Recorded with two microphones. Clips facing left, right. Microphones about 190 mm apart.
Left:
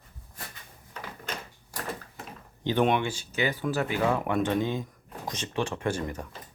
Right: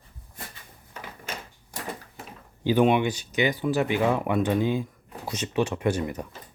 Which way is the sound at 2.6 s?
10° right (ahead or behind).